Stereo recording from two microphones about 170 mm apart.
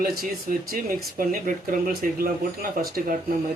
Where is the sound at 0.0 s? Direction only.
60° right (ahead or behind).